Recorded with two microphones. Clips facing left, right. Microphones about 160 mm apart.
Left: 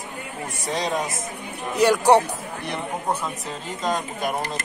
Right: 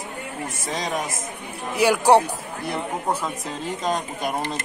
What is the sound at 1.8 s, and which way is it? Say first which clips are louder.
Speech: even; 5° right (ahead or behind).